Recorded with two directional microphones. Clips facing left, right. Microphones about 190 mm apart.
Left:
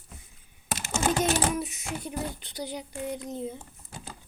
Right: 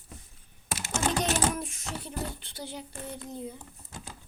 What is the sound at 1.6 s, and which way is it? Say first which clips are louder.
Child singing: left 4 dB; 5° left (ahead or behind).